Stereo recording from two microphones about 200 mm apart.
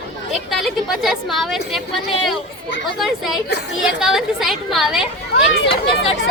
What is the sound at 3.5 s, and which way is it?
Speech, 55° left (ahead or behind).